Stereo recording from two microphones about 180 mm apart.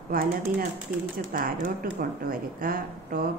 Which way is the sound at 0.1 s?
55° right (ahead or behind).